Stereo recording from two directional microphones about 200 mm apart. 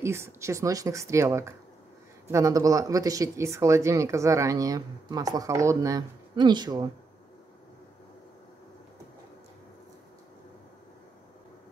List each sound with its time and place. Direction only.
0.0 s speech: 15° right (ahead or behind)